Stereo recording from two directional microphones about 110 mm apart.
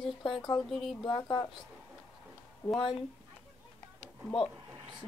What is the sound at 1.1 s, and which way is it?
Speech, 40° left (ahead or behind).